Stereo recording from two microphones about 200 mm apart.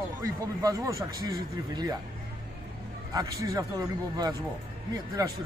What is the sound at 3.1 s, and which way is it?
Speech, 15° right (ahead or behind).